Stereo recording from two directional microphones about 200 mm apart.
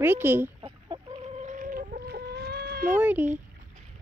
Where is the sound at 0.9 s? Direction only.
20° right (ahead or behind).